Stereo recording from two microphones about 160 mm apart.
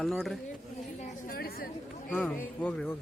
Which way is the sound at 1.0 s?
55° left (ahead or behind).